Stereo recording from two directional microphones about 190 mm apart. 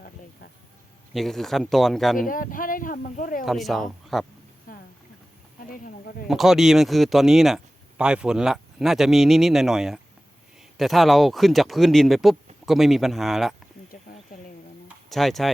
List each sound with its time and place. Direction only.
1.1 s speech: centre (ahead or behind)
2.1 s speech: 45° left (ahead or behind)
3.4 s speech: centre (ahead or behind)
4.7 s boat: 45° left (ahead or behind)
5.8 s speech: 50° left (ahead or behind)
6.2 s speech: centre (ahead or behind)
13.9 s a sound: 45° left (ahead or behind)
14.8 s a sound: centre (ahead or behind)